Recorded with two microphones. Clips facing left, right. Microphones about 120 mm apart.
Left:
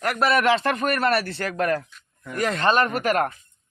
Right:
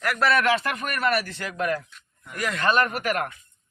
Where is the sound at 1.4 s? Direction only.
50° left (ahead or behind).